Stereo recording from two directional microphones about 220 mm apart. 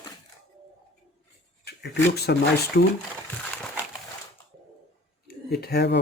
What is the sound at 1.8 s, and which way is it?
Speech, 50° left (ahead or behind).